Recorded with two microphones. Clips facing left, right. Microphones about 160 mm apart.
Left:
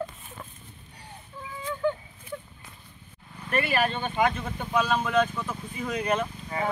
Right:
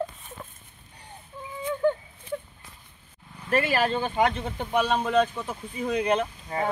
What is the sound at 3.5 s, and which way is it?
Speech, 35° right (ahead or behind).